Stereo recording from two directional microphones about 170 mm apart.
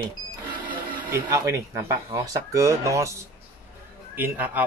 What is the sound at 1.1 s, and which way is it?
Speech, 15° right (ahead or behind).